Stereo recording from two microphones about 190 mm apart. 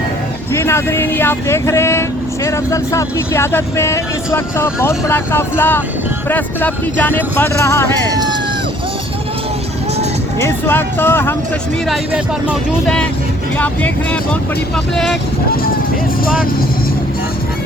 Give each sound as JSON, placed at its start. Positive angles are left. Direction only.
{"t": 0.5, "sound": "speech", "side_deg": 15}
{"t": 8.1, "sound": "speech", "side_deg": -20}
{"t": 10.4, "sound": "speech", "side_deg": 10}
{"t": 13.6, "sound": "speech", "side_deg": 10}